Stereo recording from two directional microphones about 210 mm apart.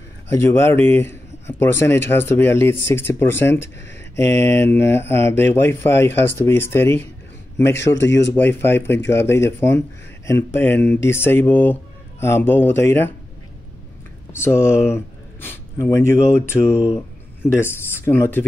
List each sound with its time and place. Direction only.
0.3 s speech: 10° left (ahead or behind)
7.8 s speech: 60° left (ahead or behind)
8.3 s speech: 10° left (ahead or behind)
14.3 s speech: 10° left (ahead or behind)